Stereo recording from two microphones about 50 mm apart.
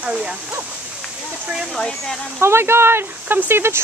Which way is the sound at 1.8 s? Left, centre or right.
Centre.